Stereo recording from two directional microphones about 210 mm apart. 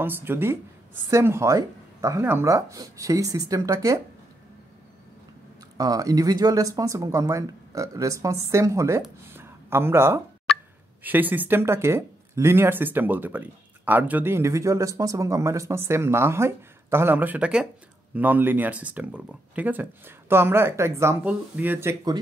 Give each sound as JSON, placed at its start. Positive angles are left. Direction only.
{"t": 0.0, "sound": "speech", "side_deg": -10}
{"t": 5.8, "sound": "speech", "side_deg": -15}
{"t": 10.5, "sound": "a sound", "side_deg": 5}
{"t": 11.0, "sound": "speech", "side_deg": -10}